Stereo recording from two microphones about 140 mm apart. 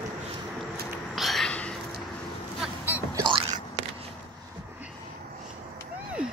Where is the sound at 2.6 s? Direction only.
10° right (ahead or behind).